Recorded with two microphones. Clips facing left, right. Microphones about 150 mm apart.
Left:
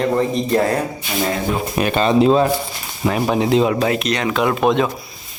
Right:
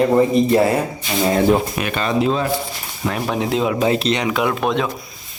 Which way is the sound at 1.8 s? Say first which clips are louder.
Left 5 dB; 30° left (ahead or behind).